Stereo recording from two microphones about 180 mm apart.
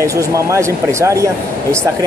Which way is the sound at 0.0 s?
15° right (ahead or behind).